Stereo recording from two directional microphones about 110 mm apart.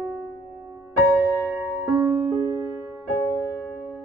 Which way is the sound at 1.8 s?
25° right (ahead or behind).